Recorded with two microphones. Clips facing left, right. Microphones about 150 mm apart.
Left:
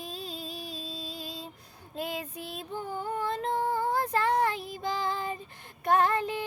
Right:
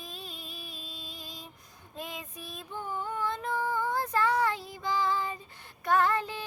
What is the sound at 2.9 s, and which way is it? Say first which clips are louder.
Female singing: left 1 dB; 40° left (ahead or behind).